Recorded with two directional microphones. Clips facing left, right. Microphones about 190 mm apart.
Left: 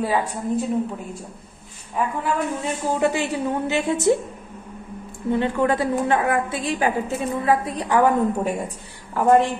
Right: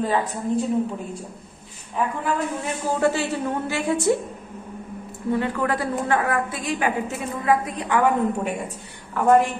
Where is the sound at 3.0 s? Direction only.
15° left (ahead or behind).